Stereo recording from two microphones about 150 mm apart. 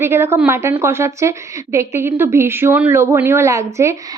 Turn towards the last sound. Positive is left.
turn(degrees=-20)  # may be behind; listen again after turning